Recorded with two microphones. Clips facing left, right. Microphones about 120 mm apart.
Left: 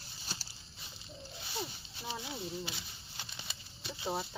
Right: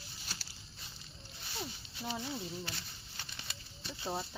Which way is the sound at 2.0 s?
10° left (ahead or behind).